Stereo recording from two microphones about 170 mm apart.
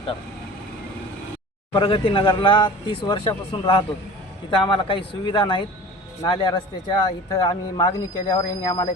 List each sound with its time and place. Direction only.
1.7 s speech: 30° left (ahead or behind)